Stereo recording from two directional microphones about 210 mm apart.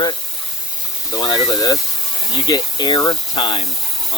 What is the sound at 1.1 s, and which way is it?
Speech, 20° left (ahead or behind).